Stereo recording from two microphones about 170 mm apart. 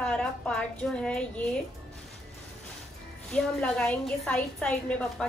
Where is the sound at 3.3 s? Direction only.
5° left (ahead or behind).